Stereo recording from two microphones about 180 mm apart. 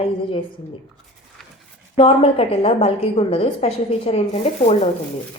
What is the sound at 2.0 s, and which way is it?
A woman's voice, 35° left (ahead or behind).